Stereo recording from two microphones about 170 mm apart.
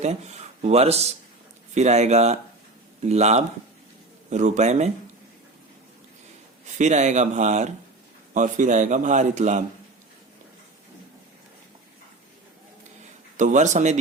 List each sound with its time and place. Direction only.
0.0 s speech: 40° right (ahead or behind)
6.7 s speech: 45° right (ahead or behind)
13.3 s speech: 45° right (ahead or behind)